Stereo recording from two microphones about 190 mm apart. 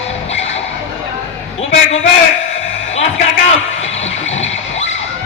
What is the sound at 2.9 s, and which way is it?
Music, 35° left (ahead or behind).